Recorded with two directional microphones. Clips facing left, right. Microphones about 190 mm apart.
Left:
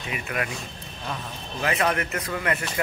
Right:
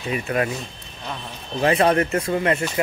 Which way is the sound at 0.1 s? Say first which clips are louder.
Right 7 dB; 30° right (ahead or behind).